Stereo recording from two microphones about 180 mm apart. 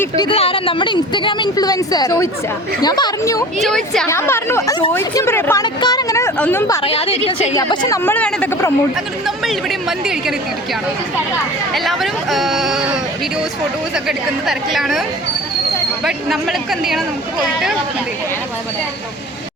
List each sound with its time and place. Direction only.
0.3 s a woman's voice: 30° left (ahead or behind); by 6.7 s 15° left (ahead or behind)
6.8 s a woman's voice: 30° left (ahead or behind)
7.5 s a woman's voice: 20° left (ahead or behind)
8.0 s a woman's voice: 10° left (ahead or behind)
11.7 s speech: centre (ahead or behind)
16.0 s speech: centre (ahead or behind)